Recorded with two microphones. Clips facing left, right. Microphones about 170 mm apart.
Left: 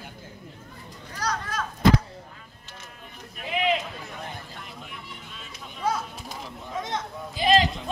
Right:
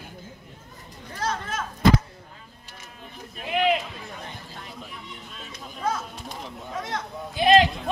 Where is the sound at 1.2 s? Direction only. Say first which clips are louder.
Right 1 dB; 25° right (ahead or behind).